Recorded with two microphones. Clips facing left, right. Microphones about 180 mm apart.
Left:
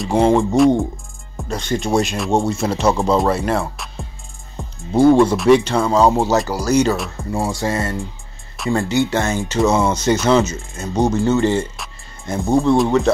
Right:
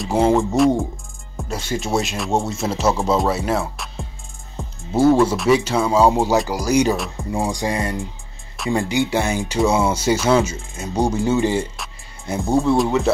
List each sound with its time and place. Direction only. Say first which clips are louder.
0.0 s speech: left 2 dB; 5° right (ahead or behind)
11.7 s speech: even; centre (ahead or behind)